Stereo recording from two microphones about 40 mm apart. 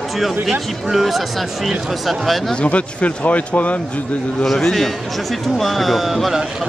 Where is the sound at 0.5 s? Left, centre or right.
Centre.